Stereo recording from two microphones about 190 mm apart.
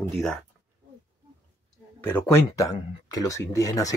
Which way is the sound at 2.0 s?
10° left (ahead or behind).